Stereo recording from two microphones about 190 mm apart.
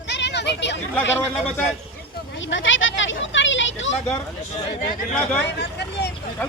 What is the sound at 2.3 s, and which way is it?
Speech, 80° left.